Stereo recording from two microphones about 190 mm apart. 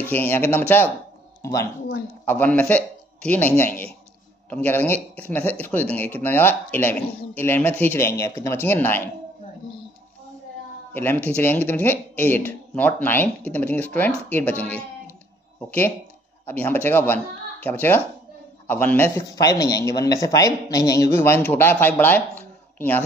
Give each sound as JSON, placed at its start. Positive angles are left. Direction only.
{"t": 0.1, "sound": "a man's voice", "side_deg": 10}
{"t": 10.9, "sound": "a man's voice", "side_deg": 10}